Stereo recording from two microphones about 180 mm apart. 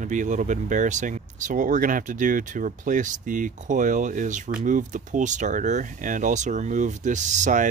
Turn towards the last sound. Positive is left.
turn(degrees=-45)  # may be behind; listen again after turning